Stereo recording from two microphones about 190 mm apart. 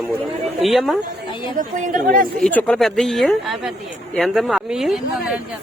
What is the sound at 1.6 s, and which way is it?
Speech, 45° right (ahead or behind).